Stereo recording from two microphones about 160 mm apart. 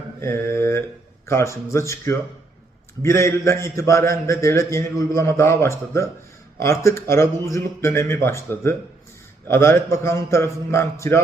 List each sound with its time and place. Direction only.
0.2 s mantra: 15° left (ahead or behind)
0.5 s speech: 15° left (ahead or behind)